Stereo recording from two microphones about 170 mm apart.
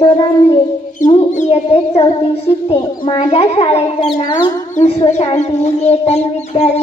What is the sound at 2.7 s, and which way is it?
A child's voice, 30° left (ahead or behind).